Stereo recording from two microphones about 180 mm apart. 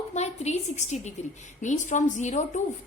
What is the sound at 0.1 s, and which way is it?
A woman's voice, 40° left (ahead or behind).